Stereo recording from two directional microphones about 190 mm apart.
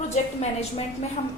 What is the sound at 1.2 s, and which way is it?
Speech, 35° left (ahead or behind).